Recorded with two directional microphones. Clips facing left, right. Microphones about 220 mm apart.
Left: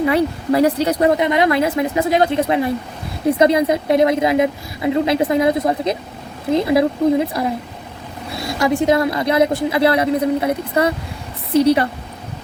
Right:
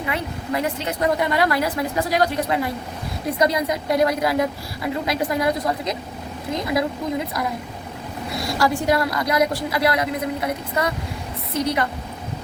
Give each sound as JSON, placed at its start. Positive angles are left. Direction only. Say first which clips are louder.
{"t": 0.0, "sound": "speech", "louder": "left 10 dB", "side_deg": 35}
{"t": 1.1, "sound": "a woman's voice", "louder": "left 5 dB", "side_deg": 20}
{"t": 8.4, "sound": "a woman's voice", "louder": "left 5 dB", "side_deg": 20}